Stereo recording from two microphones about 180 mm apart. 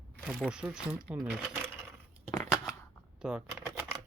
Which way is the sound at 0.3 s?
5° right (ahead or behind).